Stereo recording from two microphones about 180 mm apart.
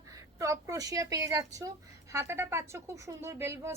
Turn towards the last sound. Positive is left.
turn(degrees=-15)  # may be behind; listen again after turning